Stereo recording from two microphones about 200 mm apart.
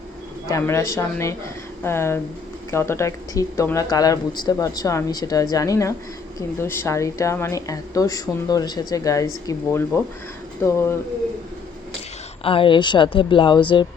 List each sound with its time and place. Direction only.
0.4 s a woman's voice: 15° left (ahead or behind)
12.4 s speech: 25° left (ahead or behind)